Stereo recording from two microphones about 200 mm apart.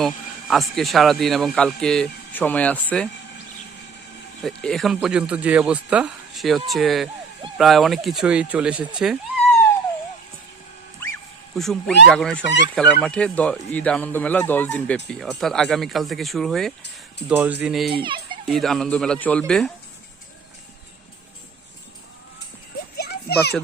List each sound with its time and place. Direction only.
0.0 s speech: centre (ahead or behind)
4.4 s speech: centre (ahead or behind)
11.5 s speech: centre (ahead or behind)
18.0 s speech: 25° right (ahead or behind)
18.4 s speech: centre (ahead or behind)
23.0 s children playing: 55° left (ahead or behind)